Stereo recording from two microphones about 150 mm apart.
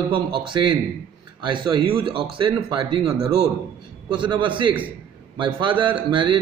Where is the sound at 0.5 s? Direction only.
30° right (ahead or behind).